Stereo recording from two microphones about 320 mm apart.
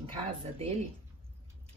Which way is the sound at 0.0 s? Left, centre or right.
Centre.